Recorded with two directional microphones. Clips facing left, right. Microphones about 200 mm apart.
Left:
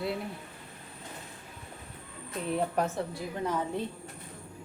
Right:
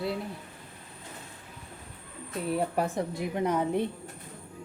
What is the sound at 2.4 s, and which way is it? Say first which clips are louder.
A woman's voice: right 1 dB; 5° right (ahead or behind).